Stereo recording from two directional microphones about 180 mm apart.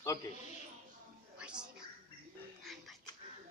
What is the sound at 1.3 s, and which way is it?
Music, 5° right (ahead or behind).